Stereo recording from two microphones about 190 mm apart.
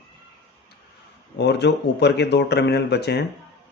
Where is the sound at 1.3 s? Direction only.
65° left (ahead or behind).